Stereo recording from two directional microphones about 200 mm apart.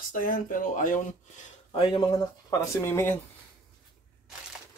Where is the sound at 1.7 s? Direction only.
25° left (ahead or behind); by 3.1 s 10° left (ahead or behind).